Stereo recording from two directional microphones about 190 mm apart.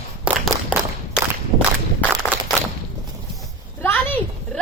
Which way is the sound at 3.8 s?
10° left (ahead or behind).